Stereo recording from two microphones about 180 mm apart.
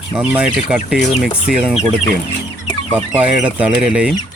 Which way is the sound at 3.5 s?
5° right (ahead or behind).